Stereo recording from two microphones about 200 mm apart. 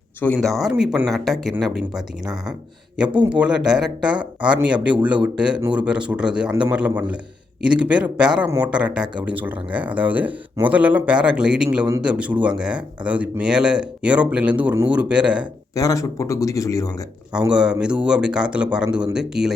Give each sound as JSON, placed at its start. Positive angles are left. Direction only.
{"t": 0.2, "sound": "a man's voice", "side_deg": 10}
{"t": 0.6, "sound": "speech", "side_deg": 0}
{"t": 3.2, "sound": "speech", "side_deg": -5}
{"t": 15.7, "sound": "a man's voice", "side_deg": 15}
{"t": 17.5, "sound": "speech", "side_deg": -5}